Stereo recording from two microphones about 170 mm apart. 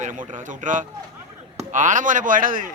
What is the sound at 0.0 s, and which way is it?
A man's voice, 50° right (ahead or behind).